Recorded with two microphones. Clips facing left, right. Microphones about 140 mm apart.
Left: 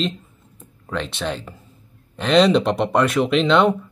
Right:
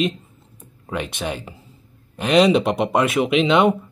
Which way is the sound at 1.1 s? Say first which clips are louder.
Left 1 dB; 10° right (ahead or behind).